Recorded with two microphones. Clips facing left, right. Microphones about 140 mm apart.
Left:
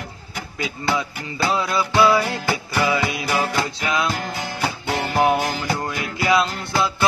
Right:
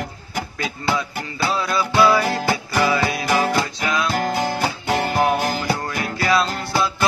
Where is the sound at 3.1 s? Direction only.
50° right (ahead or behind).